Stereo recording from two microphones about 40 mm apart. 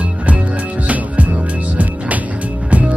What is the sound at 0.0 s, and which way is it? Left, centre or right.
Music, right.